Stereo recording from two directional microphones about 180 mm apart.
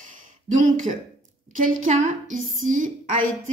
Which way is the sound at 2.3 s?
90° right.